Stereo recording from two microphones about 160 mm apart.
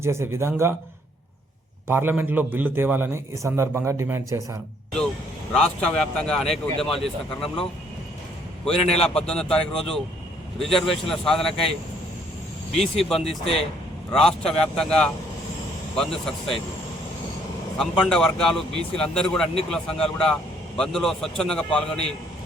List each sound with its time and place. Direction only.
0.0 s a man's voice: 15° right (ahead or behind)
1.9 s a man's voice: 15° right (ahead or behind)
5.5 s speech: 5° left (ahead or behind)
8.7 s a man's voice: 40° left (ahead or behind)
9.0 s speech: 5° left (ahead or behind)
12.8 s speech: centre (ahead or behind)
13.2 s a man's voice: 35° left (ahead or behind)
14.1 s speech: 5° left (ahead or behind)
17.7 s speech: 5° left (ahead or behind)